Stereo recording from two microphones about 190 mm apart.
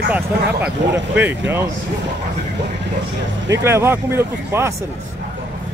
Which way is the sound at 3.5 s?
15° right (ahead or behind).